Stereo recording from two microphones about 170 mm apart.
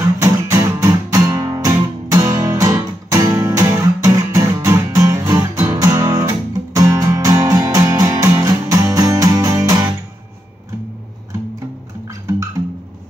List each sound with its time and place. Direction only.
0.2 s music: 15° right (ahead or behind)